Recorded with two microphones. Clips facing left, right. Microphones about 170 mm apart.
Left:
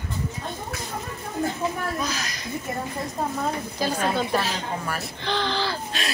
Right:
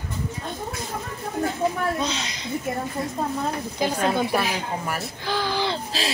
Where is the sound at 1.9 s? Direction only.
25° right (ahead or behind).